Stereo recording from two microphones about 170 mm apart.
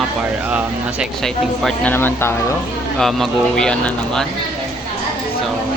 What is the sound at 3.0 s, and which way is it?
Speech, centre (ahead or behind).